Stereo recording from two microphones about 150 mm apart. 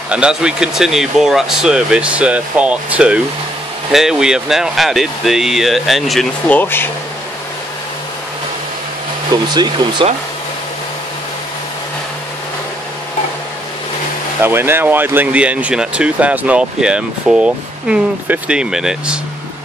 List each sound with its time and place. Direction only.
0.1 s speech: 5° right (ahead or behind)
6.6 s speech: 15° left (ahead or behind)
9.5 s speech: 30° right (ahead or behind)
14.4 s speech: 15° right (ahead or behind)